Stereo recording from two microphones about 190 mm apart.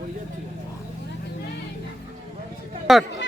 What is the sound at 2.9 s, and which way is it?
Speech, centre (ahead or behind).